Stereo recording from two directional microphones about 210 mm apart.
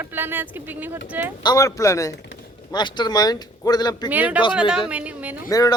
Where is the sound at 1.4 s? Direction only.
15° left (ahead or behind).